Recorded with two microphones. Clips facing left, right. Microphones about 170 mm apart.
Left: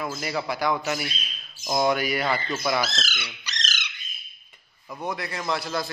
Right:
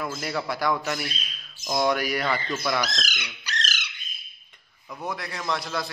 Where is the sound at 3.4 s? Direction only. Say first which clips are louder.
Right 3 dB; 10° right (ahead or behind).